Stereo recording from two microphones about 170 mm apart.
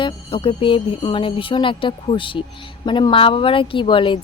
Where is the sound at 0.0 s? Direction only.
30° left (ahead or behind).